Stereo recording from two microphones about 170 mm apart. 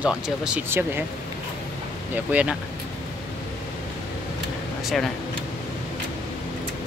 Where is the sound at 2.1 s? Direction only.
10° right (ahead or behind).